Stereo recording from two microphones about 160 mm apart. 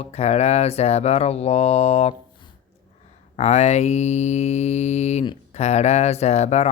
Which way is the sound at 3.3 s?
45° left (ahead or behind).